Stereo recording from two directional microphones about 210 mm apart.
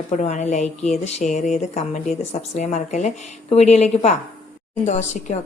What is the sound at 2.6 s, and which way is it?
Speech, 35° left (ahead or behind).